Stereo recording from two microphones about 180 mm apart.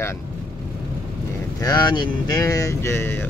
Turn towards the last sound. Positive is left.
turn(degrees=10)  # may be behind; listen again after turning